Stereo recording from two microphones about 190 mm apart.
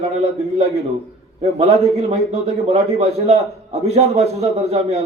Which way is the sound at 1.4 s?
35° right (ahead or behind).